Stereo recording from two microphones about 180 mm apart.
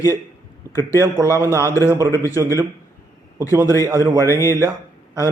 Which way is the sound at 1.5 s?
15° left (ahead or behind).